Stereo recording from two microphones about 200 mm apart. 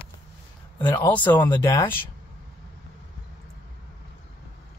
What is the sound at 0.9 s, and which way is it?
Speech, 10° left (ahead or behind).